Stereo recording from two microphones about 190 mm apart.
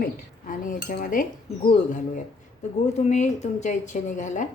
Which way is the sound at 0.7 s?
45° left (ahead or behind).